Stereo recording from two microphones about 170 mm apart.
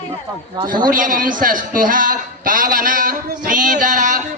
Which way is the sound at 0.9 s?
55° right (ahead or behind).